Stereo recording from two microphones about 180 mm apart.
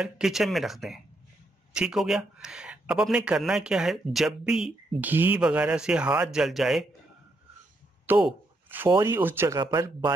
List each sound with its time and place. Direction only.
0.0 s speech: centre (ahead or behind)
8.1 s speech: 10° right (ahead or behind)
8.6 s a sound: 10° right (ahead or behind)
9.0 s speech: 15° right (ahead or behind)
9.6 s speech: 20° right (ahead or behind)